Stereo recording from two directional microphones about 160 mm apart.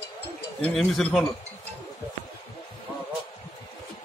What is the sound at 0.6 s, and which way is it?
Speech, 5° left (ahead or behind).